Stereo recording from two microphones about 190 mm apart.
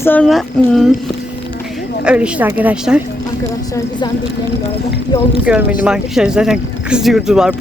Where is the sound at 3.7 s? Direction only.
20° left (ahead or behind).